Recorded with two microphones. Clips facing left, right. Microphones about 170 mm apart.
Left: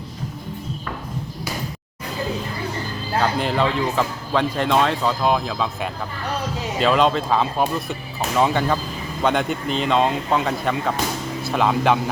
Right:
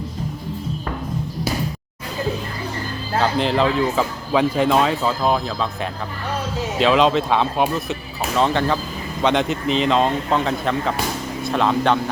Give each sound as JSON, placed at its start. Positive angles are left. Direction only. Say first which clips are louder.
{"t": 3.2, "sound": "speech", "louder": "right 2 dB", "side_deg": 0}